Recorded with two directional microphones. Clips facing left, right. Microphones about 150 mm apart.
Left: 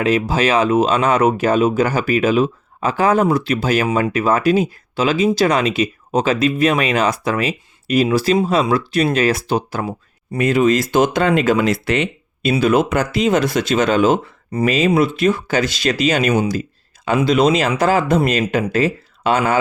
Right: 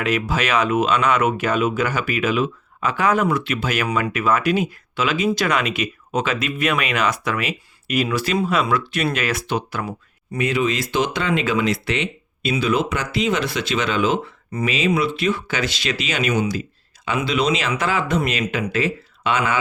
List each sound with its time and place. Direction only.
0.0 s speech: 30° left (ahead or behind)